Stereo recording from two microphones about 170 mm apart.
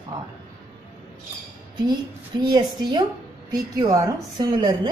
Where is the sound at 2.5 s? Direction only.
25° right (ahead or behind).